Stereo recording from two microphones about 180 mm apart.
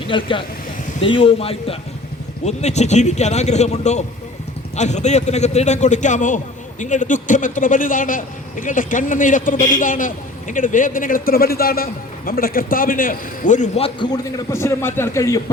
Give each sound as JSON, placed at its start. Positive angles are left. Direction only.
{"t": 0.1, "sound": "a man's voice", "side_deg": 30}